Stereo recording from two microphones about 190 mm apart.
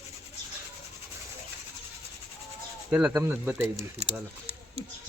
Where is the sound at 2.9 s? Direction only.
10° right (ahead or behind).